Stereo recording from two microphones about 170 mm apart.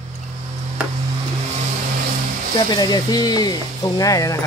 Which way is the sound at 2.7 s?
25° left (ahead or behind).